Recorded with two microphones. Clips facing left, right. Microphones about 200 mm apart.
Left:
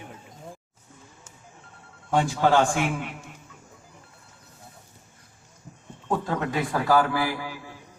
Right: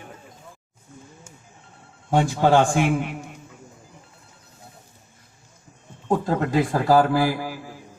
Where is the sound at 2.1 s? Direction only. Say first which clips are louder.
Right 3 dB; 40° right (ahead or behind).